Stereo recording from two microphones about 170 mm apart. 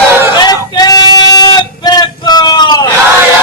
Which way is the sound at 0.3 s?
25° left (ahead or behind).